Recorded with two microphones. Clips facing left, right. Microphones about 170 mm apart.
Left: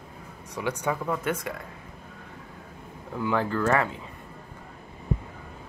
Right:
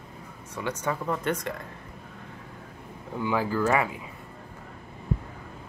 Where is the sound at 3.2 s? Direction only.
5° right (ahead or behind).